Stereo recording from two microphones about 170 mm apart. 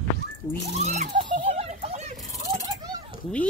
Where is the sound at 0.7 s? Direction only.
40° right (ahead or behind).